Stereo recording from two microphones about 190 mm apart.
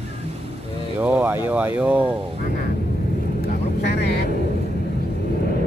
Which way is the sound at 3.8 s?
60° left (ahead or behind).